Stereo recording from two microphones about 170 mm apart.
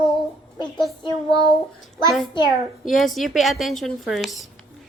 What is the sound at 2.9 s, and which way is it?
A woman's voice, centre (ahead or behind).